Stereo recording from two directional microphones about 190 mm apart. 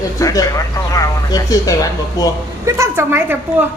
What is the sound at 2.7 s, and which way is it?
Speech, 15° right (ahead or behind).